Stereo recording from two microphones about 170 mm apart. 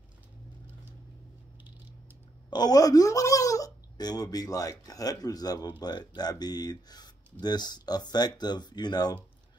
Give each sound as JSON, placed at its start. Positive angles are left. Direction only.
{"t": 2.5, "sound": "speech", "side_deg": 20}